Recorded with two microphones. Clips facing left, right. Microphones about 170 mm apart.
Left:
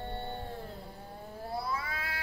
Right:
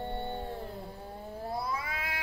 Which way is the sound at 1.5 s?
20° right (ahead or behind).